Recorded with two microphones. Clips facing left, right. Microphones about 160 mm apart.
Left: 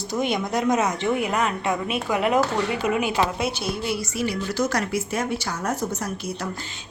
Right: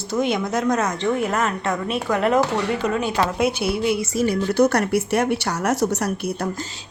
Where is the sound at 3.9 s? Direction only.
45° right (ahead or behind); by 6.3 s 75° right (ahead or behind).